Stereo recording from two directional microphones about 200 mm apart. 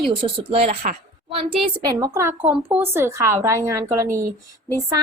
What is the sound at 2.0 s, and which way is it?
A woman's voice, 15° right (ahead or behind).